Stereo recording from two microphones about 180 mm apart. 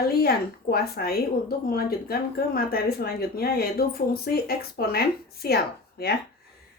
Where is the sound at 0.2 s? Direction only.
60° left (ahead or behind).